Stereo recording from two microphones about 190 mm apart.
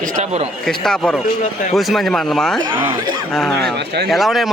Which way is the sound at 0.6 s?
Centre (ahead or behind).